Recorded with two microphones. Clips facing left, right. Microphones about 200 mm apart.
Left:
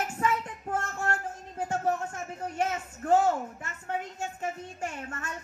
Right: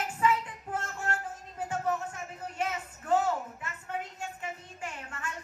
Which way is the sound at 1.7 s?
45° left (ahead or behind).